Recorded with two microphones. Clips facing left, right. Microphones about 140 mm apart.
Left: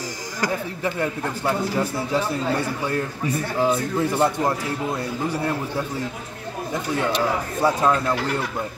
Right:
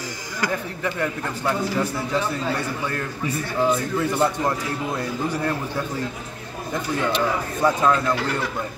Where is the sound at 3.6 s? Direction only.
10° left (ahead or behind).